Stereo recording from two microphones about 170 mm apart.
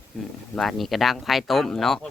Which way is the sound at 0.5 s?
Centre (ahead or behind).